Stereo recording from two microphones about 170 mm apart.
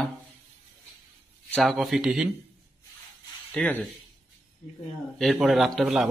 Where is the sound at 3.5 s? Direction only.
5° left (ahead or behind).